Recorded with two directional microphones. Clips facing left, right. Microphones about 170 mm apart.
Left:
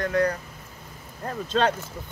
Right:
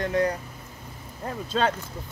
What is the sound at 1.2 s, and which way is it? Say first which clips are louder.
Speech: left 2 dB; 10° right (ahead or behind).